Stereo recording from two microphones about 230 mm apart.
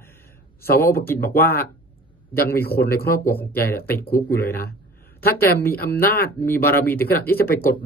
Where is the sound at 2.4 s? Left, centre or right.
Left.